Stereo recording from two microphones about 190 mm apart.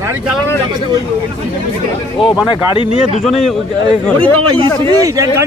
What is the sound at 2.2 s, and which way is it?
Speech, centre (ahead or behind).